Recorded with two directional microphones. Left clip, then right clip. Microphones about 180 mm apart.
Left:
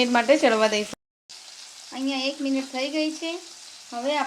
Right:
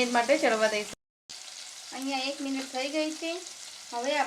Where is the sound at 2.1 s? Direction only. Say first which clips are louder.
Left 5 dB; 30° left (ahead or behind).